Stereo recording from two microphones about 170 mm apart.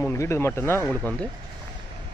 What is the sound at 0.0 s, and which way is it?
Speech, 15° left (ahead or behind).